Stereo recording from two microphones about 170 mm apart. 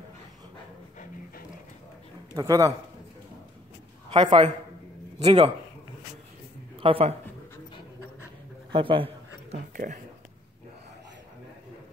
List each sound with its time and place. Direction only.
2.3 s a man's voice: 20° right (ahead or behind)
4.1 s a man's voice: 30° right (ahead or behind)
6.8 s speech: 35° right (ahead or behind)
8.7 s a sound: 30° right (ahead or behind)